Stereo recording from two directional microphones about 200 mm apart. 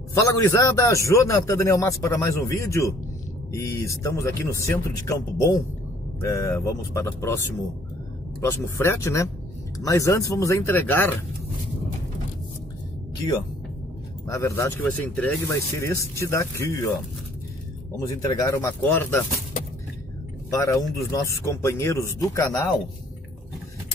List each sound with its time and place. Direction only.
0.1 s speech: 15° left (ahead or behind)
14.3 s speech: 15° left (ahead or behind)
17.9 s speech: 15° left (ahead or behind)
20.4 s speech: 15° left (ahead or behind)